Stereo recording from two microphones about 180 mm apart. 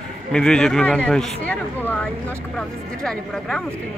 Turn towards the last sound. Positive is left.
turn(degrees=5)  # may be behind; listen again after turning